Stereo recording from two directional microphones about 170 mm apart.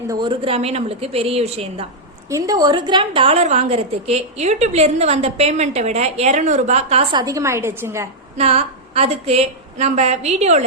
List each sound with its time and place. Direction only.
0.1 s a woman's voice: 25° right (ahead or behind)
2.3 s a woman's voice: 20° right (ahead or behind)
8.4 s a woman's voice: 35° right (ahead or behind)